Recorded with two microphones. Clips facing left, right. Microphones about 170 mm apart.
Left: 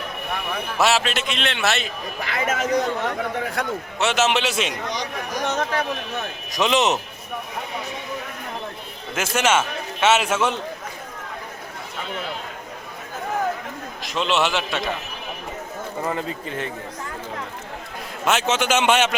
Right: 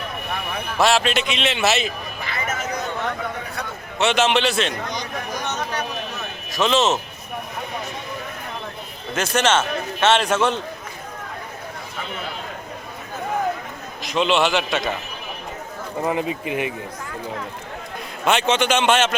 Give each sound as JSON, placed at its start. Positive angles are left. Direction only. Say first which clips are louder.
{"t": 0.8, "sound": "a man's voice", "louder": "right 2 dB", "side_deg": 5}
{"t": 2.2, "sound": "a sound", "louder": "left 4 dB", "side_deg": 90}
{"t": 3.4, "sound": "a man's voice", "louder": "left 5 dB", "side_deg": 90}
{"t": 3.9, "sound": "a man's voice", "louder": "right 2 dB", "side_deg": 5}
{"t": 4.9, "sound": "a sound", "louder": "even", "side_deg": 90}
{"t": 6.5, "sound": "a man's voice", "louder": "right 1 dB", "side_deg": 15}
{"t": 9.1, "sound": "a man's voice", "louder": "right 1 dB", "side_deg": 10}
{"t": 14.0, "sound": "a man's voice", "louder": "right 3 dB", "side_deg": 0}
{"t": 16.0, "sound": "speech", "louder": "right 5 dB", "side_deg": -15}
{"t": 18.3, "sound": "a man's voice", "louder": "right 2 dB", "side_deg": 5}